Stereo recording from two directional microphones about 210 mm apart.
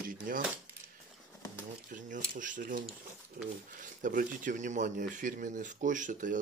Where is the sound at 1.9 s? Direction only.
40° right (ahead or behind).